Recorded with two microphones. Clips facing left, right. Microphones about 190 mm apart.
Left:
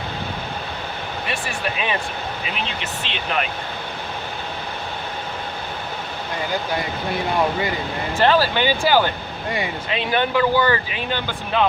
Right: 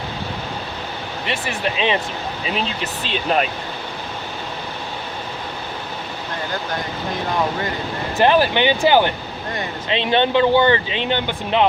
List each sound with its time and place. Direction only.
1.3 s speech: 25° right (ahead or behind)
3.1 s speech: 35° right (ahead or behind)
8.2 s speech: 20° right (ahead or behind)